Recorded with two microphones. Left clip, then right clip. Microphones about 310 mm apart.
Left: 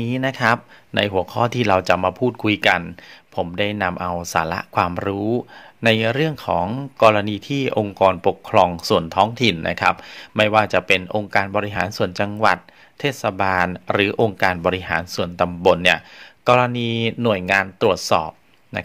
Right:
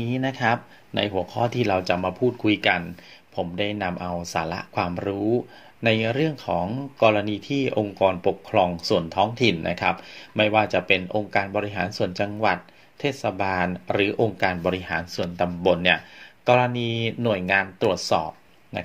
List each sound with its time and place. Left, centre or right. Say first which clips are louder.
0.0 s speech: left 5 dB; left